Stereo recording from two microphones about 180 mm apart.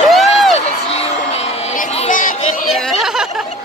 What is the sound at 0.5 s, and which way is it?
Music, 35° left (ahead or behind).